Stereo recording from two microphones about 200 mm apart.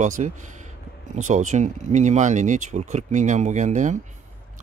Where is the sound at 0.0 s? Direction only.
35° right (ahead or behind).